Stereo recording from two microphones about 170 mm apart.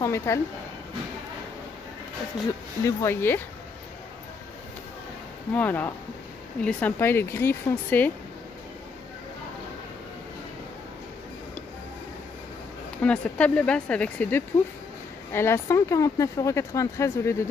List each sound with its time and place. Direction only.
0.0 s speech: 15° left (ahead or behind)
2.8 s speech: 15° left (ahead or behind)
5.5 s speech: 10° left (ahead or behind)
13.0 s speech: 5° left (ahead or behind)